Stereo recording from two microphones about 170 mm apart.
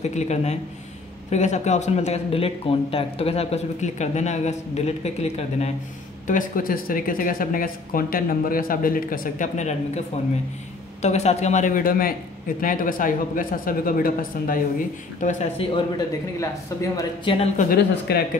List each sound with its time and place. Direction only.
0.0 s speech: 40° left (ahead or behind)
6.2 s speech: 50° left (ahead or behind)
15.1 s speech: 45° left (ahead or behind)
16.3 s speech: 20° left (ahead or behind)
17.2 s a woman's voice: 30° left (ahead or behind)
17.7 s speech: 70° left (ahead or behind)